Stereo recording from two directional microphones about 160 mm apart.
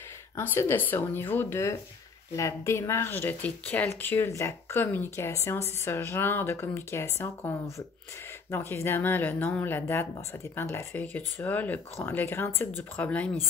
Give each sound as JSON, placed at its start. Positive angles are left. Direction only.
{"t": 0.4, "sound": "speech", "side_deg": 15}